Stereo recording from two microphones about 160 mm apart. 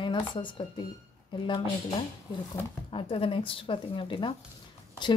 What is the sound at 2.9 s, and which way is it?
A woman's voice, 35° left (ahead or behind).